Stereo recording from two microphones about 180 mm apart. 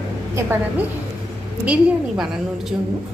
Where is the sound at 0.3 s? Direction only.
15° right (ahead or behind).